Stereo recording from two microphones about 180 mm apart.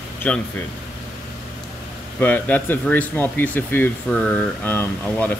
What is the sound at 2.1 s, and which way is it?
Speech, 10° left (ahead or behind).